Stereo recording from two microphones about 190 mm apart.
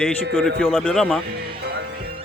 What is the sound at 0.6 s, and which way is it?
Speech, centre (ahead or behind).